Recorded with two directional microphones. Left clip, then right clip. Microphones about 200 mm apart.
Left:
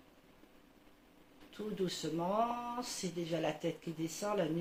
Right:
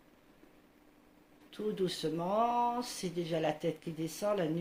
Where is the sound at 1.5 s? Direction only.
60° right (ahead or behind).